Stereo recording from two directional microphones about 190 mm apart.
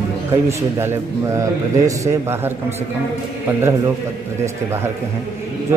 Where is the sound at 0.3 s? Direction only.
15° right (ahead or behind).